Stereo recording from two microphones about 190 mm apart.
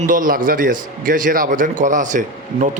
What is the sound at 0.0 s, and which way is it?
A man's voice, 45° right (ahead or behind).